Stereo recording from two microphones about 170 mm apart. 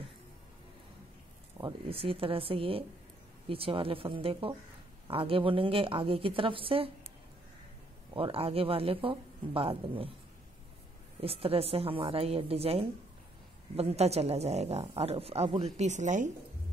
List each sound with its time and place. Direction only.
1.6 s speech: 30° right (ahead or behind)
8.1 s speech: 35° right (ahead or behind)
11.1 s speech: 35° right (ahead or behind)